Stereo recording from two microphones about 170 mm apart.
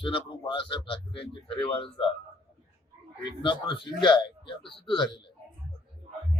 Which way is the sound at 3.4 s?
30° left (ahead or behind).